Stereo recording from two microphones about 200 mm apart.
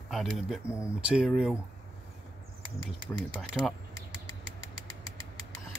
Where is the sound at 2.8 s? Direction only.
25° right (ahead or behind).